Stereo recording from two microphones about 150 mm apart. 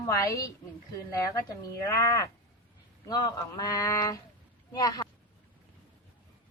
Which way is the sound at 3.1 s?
25° left (ahead or behind).